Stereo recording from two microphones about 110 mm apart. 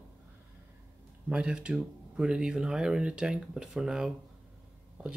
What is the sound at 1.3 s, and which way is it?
Speech, 10° right (ahead or behind).